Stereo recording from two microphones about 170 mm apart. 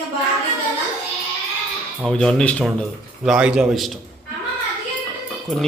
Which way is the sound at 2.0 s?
5° left (ahead or behind).